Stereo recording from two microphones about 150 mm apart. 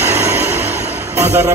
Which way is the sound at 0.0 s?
15° right (ahead or behind).